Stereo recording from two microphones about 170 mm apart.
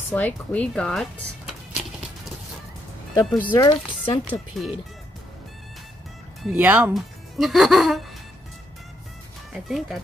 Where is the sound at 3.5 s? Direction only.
25° left (ahead or behind).